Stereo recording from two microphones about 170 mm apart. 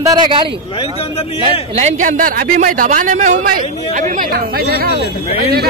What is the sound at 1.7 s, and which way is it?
A man's voice, 40° right (ahead or behind).